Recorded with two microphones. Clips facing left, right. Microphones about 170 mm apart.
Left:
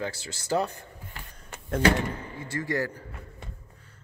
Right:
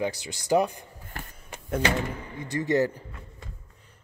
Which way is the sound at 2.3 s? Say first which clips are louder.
Right 6 dB; 20° right (ahead or behind).